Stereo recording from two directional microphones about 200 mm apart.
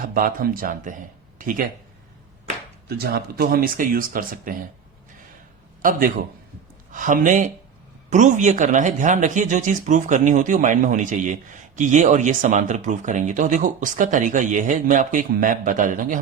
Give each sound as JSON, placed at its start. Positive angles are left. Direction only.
{"t": 0.0, "sound": "speech", "side_deg": -45}
{"t": 3.0, "sound": "speech", "side_deg": -50}
{"t": 5.8, "sound": "speech", "side_deg": -45}